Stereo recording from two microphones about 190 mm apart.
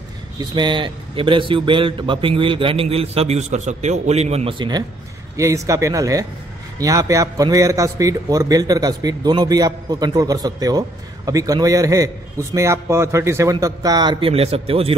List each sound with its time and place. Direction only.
0.4 s a man's voice: 25° right (ahead or behind)